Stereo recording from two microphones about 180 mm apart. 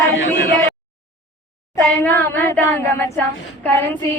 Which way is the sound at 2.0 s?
10° left (ahead or behind).